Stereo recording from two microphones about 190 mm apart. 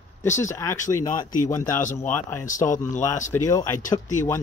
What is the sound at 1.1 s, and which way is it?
Speech, 45° left (ahead or behind).